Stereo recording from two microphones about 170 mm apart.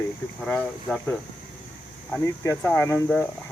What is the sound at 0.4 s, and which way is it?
Speech, 5° left (ahead or behind).